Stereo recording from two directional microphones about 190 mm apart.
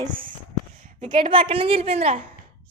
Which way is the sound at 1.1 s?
25° right (ahead or behind).